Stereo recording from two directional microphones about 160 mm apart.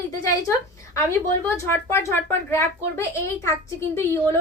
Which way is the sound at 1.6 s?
15° left (ahead or behind).